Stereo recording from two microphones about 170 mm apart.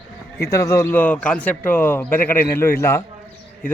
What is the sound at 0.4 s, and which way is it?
A man's voice, 15° left (ahead or behind).